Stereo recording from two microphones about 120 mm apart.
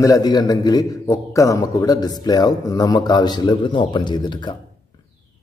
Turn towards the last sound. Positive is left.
turn(degrees=40)  # may be behind; listen again after turning